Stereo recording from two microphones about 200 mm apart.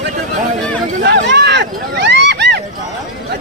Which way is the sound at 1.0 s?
55° right (ahead or behind).